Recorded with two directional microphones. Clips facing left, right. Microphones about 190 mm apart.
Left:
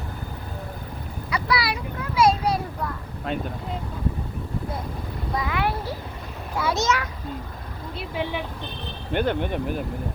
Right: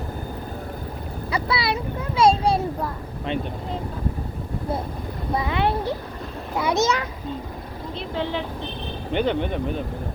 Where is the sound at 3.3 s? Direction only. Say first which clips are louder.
Right 2 dB; centre (ahead or behind).